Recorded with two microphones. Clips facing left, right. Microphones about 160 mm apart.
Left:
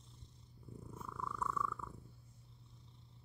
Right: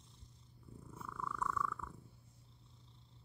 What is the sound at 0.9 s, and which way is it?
Purr, 10° left (ahead or behind).